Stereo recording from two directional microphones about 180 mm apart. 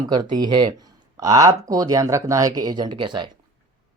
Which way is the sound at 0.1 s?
25° right (ahead or behind).